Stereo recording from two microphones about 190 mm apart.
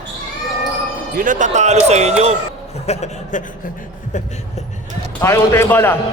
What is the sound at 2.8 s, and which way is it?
Speech, 35° left (ahead or behind).